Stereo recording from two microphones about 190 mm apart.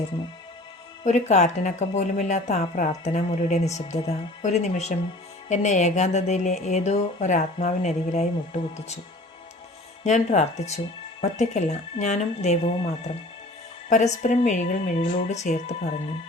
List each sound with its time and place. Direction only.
1.0 s speech: 40° left (ahead or behind)
10.0 s speech: 40° left (ahead or behind)
13.9 s speech: 40° left (ahead or behind)